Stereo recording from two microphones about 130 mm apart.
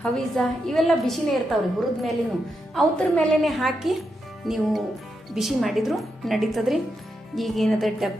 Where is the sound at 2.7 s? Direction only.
Centre (ahead or behind).